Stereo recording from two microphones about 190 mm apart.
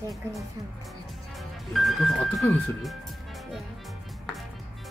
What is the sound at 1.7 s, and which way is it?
A woman's voice, centre (ahead or behind).